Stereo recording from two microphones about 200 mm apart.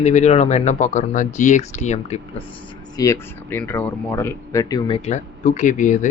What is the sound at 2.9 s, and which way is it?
Speech, 15° left (ahead or behind).